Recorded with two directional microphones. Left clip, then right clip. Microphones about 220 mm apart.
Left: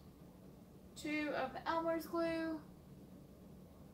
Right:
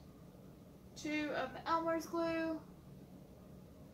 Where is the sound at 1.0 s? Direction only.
Centre (ahead or behind).